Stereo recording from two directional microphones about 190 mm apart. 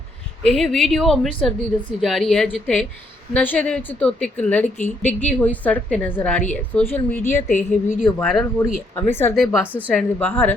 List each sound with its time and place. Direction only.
0.4 s a woman's voice: centre (ahead or behind)
7.4 s a woman's voice: 40° left (ahead or behind)
8.0 s a woman's voice: centre (ahead or behind)
9.3 s a woman's voice: 5° right (ahead or behind)
9.9 s a woman's voice: 5° left (ahead or behind)